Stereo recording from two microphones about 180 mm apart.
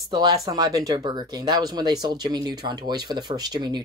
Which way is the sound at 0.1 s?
20° right (ahead or behind).